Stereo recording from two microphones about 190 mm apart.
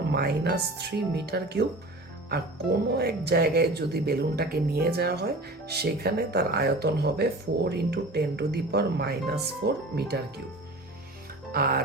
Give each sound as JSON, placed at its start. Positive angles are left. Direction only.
{"t": 0.1, "sound": "speech", "side_deg": -60}
{"t": 11.5, "sound": "speech", "side_deg": -55}